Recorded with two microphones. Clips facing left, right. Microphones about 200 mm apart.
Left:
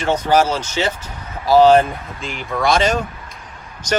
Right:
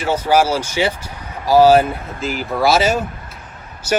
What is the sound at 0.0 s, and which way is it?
Speech, 10° right (ahead or behind).